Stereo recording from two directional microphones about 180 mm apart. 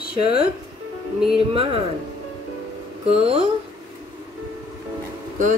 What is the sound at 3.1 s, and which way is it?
Speech, 30° right (ahead or behind).